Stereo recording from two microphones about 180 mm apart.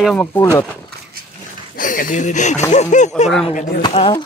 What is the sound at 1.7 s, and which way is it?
Speech, 50° left (ahead or behind).